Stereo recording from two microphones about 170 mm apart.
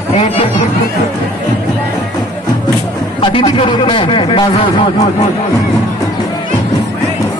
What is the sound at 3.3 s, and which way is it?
Speech, 30° left (ahead or behind).